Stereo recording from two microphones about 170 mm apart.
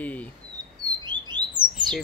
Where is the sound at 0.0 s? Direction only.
10° left (ahead or behind).